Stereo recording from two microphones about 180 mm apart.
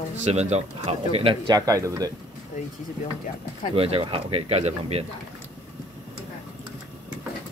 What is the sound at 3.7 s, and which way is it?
Speech, 30° right (ahead or behind).